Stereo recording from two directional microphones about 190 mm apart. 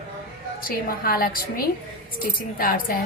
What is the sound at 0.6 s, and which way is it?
A woman's voice, 50° left (ahead or behind).